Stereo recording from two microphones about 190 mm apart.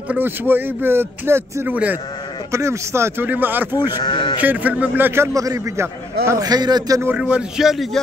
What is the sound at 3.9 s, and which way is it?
Speech, 25° left (ahead or behind).